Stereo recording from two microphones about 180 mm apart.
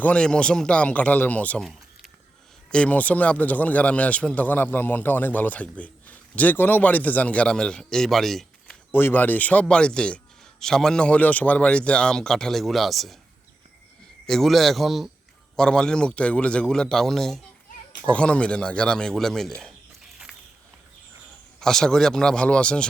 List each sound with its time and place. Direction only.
0.0 s a man's voice: 5° left (ahead or behind)
14.3 s a man's voice: centre (ahead or behind)
21.6 s a man's voice: 5° left (ahead or behind)